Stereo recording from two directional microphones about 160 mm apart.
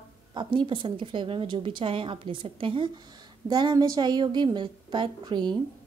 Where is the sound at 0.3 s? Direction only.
30° right (ahead or behind).